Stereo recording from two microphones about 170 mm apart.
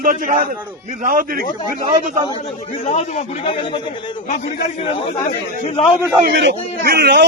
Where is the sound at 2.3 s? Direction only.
35° left (ahead or behind).